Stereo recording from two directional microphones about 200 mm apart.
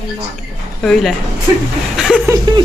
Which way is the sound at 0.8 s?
Centre (ahead or behind).